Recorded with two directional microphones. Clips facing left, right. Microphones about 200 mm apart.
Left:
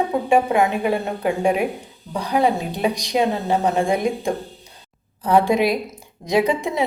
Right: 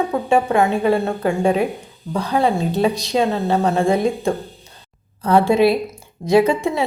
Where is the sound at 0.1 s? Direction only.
15° left (ahead or behind).